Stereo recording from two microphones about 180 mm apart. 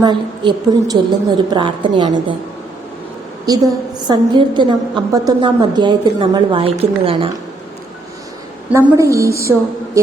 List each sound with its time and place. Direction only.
0.0 s a woman's voice: 25° right (ahead or behind)
4.1 s a woman's voice: 25° right (ahead or behind)
8.7 s a woman's voice: 15° right (ahead or behind)